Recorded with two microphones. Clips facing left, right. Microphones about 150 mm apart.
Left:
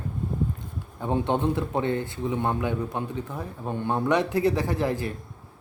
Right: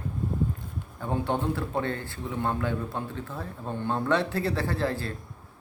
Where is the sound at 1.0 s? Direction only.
20° left (ahead or behind).